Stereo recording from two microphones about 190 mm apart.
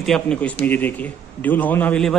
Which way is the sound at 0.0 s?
5° left (ahead or behind).